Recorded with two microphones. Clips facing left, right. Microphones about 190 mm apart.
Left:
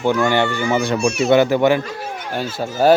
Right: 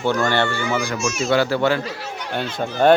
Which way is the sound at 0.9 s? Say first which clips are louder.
Left 6 dB; 60° left (ahead or behind).